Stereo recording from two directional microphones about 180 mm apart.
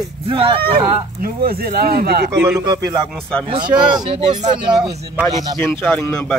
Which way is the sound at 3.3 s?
5° left (ahead or behind).